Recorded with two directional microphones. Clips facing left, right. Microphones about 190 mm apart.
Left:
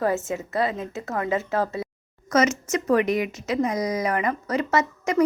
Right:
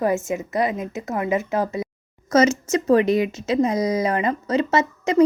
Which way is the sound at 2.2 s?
30° right (ahead or behind).